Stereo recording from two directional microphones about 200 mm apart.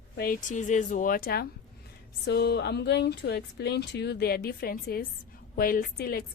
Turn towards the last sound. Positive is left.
turn(degrees=50)  # may be behind; listen again after turning